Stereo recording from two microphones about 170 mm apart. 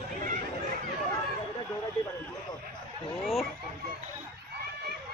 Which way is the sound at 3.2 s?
Centre (ahead or behind).